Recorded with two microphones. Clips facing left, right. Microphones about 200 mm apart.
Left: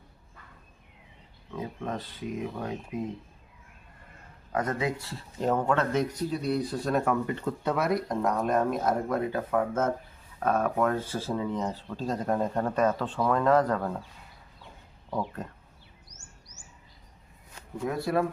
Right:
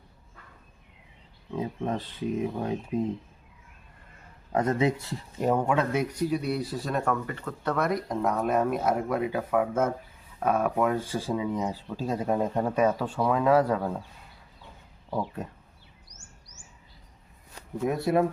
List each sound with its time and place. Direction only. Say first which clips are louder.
1.5 s speech: right 4 dB; 25° right (ahead or behind)
4.5 s speech: right 4 dB; 25° right (ahead or behind); by 7.2 s 5° left (ahead or behind)
7.3 s speech: left 2 dB; 20° left (ahead or behind)
7.8 s speech: right 2 dB; centre (ahead or behind)
15.4 s speech: right 2 dB; 10° right (ahead or behind)
17.8 s speech: right 3 dB; 20° right (ahead or behind)